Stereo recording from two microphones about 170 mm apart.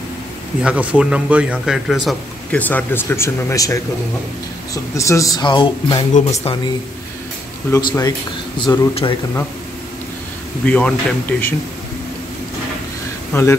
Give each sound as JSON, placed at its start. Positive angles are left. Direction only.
{"t": 0.6, "sound": "speech", "side_deg": -5}
{"t": 2.7, "sound": "speech", "side_deg": 15}
{"t": 4.9, "sound": "speech", "side_deg": 20}
{"t": 7.7, "sound": "speech", "side_deg": 15}
{"t": 8.5, "sound": "speech", "side_deg": 30}
{"t": 10.6, "sound": "speech", "side_deg": 10}
{"t": 13.3, "sound": "speech", "side_deg": 15}